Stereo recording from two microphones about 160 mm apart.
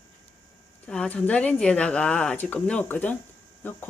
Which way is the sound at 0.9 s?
5° left (ahead or behind).